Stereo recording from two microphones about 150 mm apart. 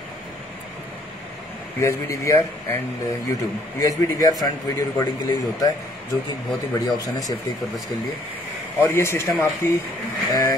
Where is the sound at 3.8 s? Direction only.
20° left (ahead or behind).